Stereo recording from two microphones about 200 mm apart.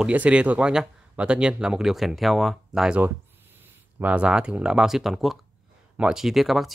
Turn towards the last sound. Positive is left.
turn(degrees=0)  # may be behind; listen again after turning